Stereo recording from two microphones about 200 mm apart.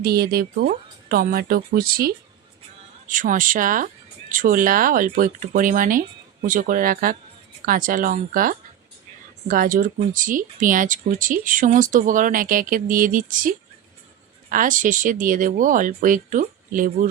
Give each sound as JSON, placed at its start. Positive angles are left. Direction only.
{"t": 0.0, "sound": "speech", "side_deg": -50}